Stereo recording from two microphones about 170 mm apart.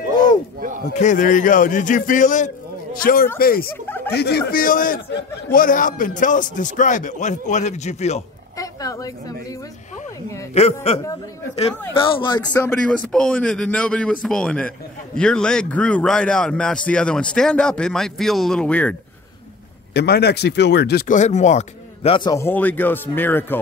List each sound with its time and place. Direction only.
0.9 s a man's voice: 50° left (ahead or behind)
3.8 s a sound: 10° left (ahead or behind)
4.1 s a man's voice: 70° left (ahead or behind); by 8.2 s 40° left (ahead or behind)
8.5 s a woman's voice: 20° left (ahead or behind)
10.5 s a man's voice: 40° left (ahead or behind)
12.6 s a man's voice: 5° left (ahead or behind)
19.9 s speech: 70° left (ahead or behind)
21.1 s speech: 45° left (ahead or behind)
22.3 s speech: 15° left (ahead or behind)